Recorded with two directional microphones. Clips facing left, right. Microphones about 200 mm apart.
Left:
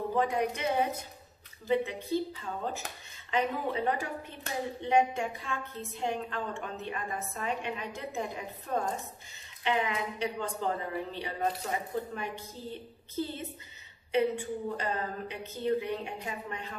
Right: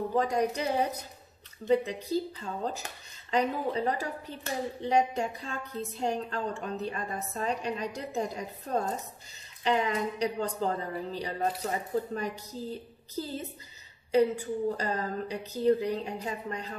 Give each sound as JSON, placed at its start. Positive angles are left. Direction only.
{"t": 0.1, "sound": "a woman's voice", "side_deg": -35}